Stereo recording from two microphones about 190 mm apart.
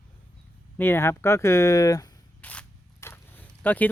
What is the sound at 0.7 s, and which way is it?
Speech, 10° left (ahead or behind).